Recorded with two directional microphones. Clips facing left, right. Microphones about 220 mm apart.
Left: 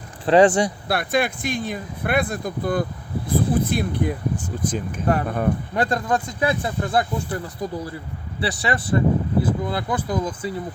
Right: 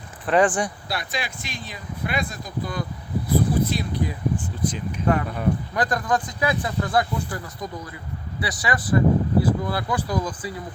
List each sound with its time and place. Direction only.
0.3 s speech: 25° left (ahead or behind)
0.9 s speech: 55° left (ahead or behind)
5.7 s speech: 25° left (ahead or behind)